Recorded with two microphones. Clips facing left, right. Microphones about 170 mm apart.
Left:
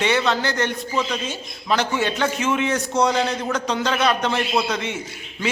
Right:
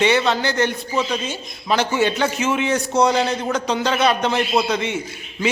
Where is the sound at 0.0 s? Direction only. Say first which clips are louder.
Right 3 dB; centre (ahead or behind).